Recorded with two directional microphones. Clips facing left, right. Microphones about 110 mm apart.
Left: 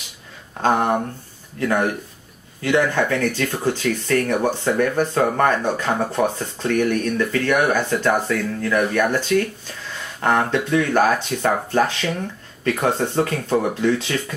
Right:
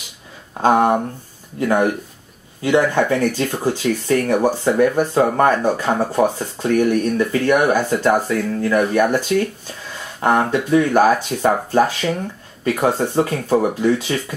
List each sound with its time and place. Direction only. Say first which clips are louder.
0.6 s speech: right 4 dB; 15° right (ahead or behind)